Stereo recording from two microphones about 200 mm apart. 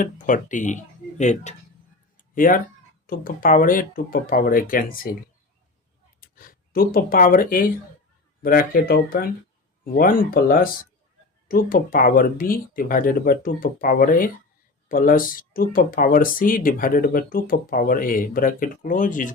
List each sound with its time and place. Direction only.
0.0 s speech: 40° left (ahead or behind)
2.1 s a sound: 40° left (ahead or behind)
3.1 s speech: 45° left (ahead or behind)
6.1 s speech: 45° left (ahead or behind)